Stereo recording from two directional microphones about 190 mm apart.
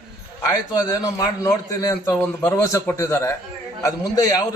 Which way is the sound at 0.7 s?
20° left (ahead or behind).